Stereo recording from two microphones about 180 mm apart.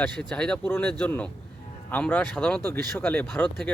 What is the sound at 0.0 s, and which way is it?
Speech, 5° left (ahead or behind).